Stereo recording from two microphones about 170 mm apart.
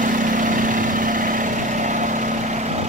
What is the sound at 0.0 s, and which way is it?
Vehicle, 50° right (ahead or behind).